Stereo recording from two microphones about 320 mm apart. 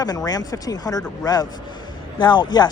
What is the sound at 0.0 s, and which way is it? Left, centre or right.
Speech, centre.